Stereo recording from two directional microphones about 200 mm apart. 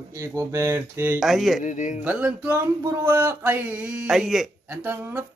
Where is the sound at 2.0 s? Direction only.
10° right (ahead or behind).